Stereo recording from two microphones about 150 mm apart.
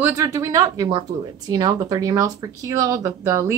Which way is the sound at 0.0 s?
20° right (ahead or behind).